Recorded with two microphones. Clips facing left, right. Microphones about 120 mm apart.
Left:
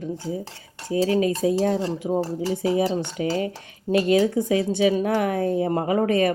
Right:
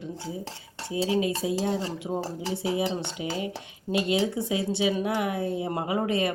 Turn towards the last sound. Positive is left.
turn(degrees=45)  # may be behind; listen again after turning